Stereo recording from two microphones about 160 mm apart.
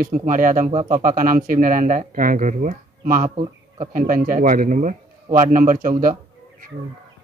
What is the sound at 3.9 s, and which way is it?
A man's voice, 60° right (ahead or behind).